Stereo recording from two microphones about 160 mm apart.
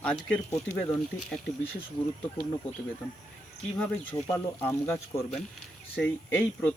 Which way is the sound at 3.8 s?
10° left (ahead or behind).